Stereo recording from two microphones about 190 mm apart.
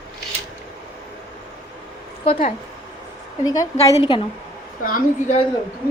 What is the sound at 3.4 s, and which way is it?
Speech, 20° left (ahead or behind).